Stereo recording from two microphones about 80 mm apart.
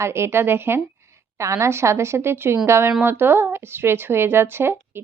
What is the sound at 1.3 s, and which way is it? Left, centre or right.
A woman's voice, right.